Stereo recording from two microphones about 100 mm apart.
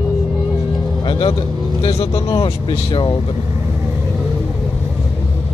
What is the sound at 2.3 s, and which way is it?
Speech, 60° left (ahead or behind).